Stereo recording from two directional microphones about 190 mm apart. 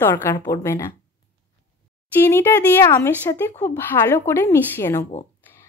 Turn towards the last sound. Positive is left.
turn(degrees=15)  # may be behind; listen again after turning